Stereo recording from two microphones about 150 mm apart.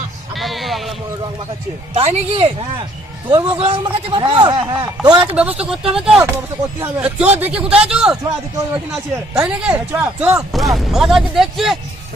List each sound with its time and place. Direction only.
0.3 s music: centre (ahead or behind)
1.9 s a man's voice: 40° right (ahead or behind)
5.2 s a man's voice: 10° right (ahead or behind)
10.5 s speech: centre (ahead or behind)